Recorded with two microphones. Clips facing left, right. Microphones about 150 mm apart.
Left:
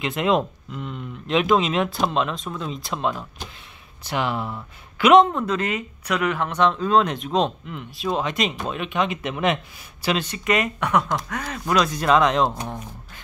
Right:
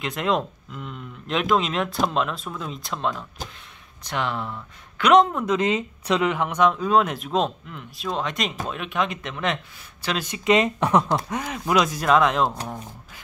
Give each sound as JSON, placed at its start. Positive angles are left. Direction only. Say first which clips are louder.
{"t": 0.0, "sound": "speech", "louder": "left 3 dB", "side_deg": 0}
{"t": 5.5, "sound": "speech", "louder": "right 3 dB", "side_deg": -20}
{"t": 9.2, "sound": "speech", "louder": "left 4 dB", "side_deg": 15}
{"t": 10.2, "sound": "speech", "louder": "right 3 dB", "side_deg": -20}
{"t": 11.4, "sound": "speech", "louder": "left 2 dB", "side_deg": -15}
{"t": 12.0, "sound": "speech", "louder": "left 3 dB", "side_deg": -5}